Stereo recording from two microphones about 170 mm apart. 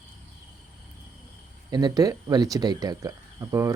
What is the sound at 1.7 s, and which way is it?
Speech, 20° right (ahead or behind).